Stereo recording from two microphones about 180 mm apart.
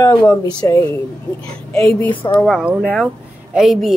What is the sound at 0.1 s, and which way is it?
Speech, 20° left (ahead or behind).